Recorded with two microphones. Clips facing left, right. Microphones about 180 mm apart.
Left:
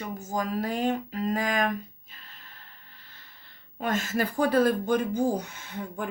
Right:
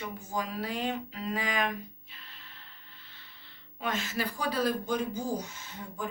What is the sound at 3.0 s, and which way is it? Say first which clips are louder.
Music: left 1 dB; 45° left (ahead or behind).